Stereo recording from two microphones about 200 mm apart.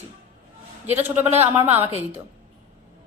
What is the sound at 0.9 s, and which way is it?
A woman's voice, 10° right (ahead or behind).